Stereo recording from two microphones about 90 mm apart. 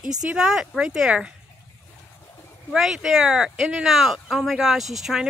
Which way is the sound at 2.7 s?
5° right (ahead or behind).